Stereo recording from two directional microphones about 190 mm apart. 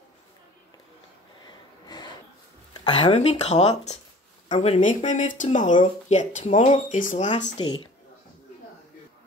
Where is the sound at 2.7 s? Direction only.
25° left (ahead or behind).